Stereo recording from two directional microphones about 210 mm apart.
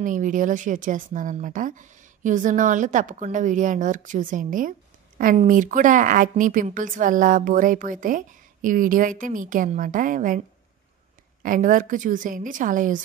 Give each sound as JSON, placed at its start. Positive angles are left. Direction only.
{"t": 0.0, "sound": "speech", "side_deg": -40}
{"t": 11.4, "sound": "speech", "side_deg": -40}